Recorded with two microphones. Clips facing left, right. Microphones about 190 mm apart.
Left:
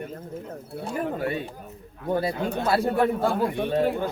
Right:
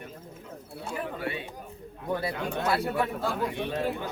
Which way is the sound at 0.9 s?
45° left (ahead or behind).